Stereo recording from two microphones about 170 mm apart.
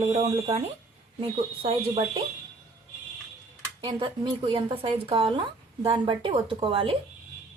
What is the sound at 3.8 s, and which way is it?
Speech, 30° right (ahead or behind).